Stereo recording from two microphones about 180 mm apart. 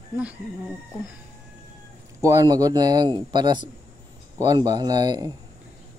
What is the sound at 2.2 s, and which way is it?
Speech, 20° right (ahead or behind).